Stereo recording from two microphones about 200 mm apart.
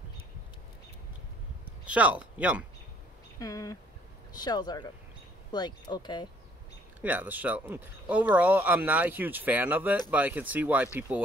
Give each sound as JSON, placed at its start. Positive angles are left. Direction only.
{"t": 1.9, "sound": "speech", "side_deg": -5}
{"t": 3.3, "sound": "speech", "side_deg": 15}
{"t": 7.0, "sound": "speech", "side_deg": -10}